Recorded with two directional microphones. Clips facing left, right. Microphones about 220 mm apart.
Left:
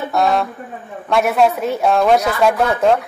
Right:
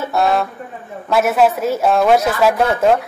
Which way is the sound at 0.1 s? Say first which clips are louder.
Even; centre (ahead or behind).